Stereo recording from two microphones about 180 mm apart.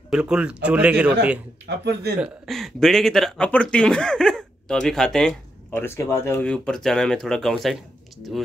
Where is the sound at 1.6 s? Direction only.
70° right (ahead or behind).